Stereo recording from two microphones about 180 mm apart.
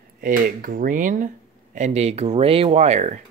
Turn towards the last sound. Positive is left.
turn(degrees=-40)  # may be behind; listen again after turning